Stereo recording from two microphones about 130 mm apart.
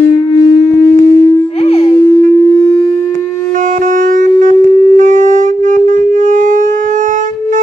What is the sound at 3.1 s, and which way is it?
Shofar, 80° right.